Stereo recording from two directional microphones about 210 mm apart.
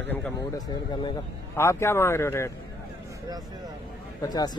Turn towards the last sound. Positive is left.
turn(degrees=20)  # may be behind; listen again after turning